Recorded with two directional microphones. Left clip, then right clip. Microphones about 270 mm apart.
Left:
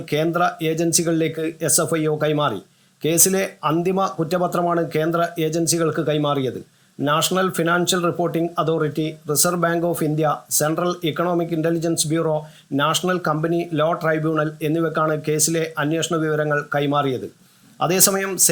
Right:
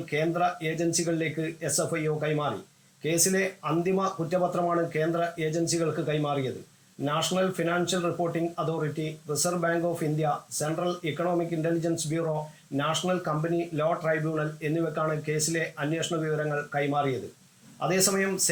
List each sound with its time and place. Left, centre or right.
0.1 s speech: left